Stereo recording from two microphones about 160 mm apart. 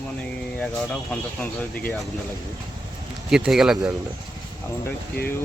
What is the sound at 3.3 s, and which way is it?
Speech, 5° right (ahead or behind).